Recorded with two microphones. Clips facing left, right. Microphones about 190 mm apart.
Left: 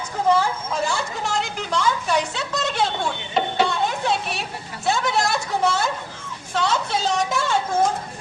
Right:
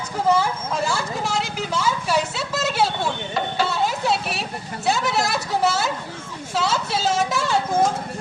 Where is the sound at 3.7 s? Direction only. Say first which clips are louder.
Right 1 dB; 5° right (ahead or behind).